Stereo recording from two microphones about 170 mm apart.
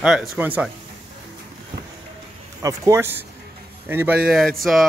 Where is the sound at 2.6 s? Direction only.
20° right (ahead or behind); by 4.9 s centre (ahead or behind).